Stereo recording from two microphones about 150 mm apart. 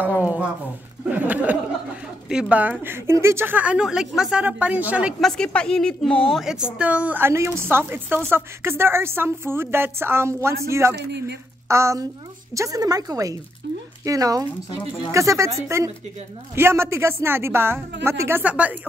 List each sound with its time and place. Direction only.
0.0 s a woman's voice: 10° right (ahead or behind)
1.1 s a sound: 10° right (ahead or behind)
2.5 s a woman's voice: 10° right (ahead or behind)
5.2 s a woman's voice: 5° left (ahead or behind); by 18.8 s 10° right (ahead or behind)